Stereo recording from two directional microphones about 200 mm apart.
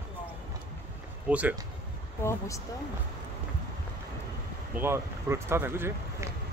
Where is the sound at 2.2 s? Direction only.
15° left (ahead or behind).